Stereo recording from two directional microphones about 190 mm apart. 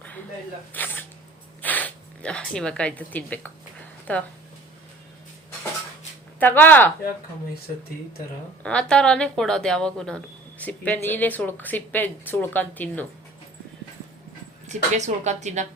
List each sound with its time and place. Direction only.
0.7 s speech: 10° left (ahead or behind)
6.4 s speech: 10° left (ahead or behind)
8.6 s a woman's voice: 5° left (ahead or behind)
14.7 s a woman's voice: 40° right (ahead or behind)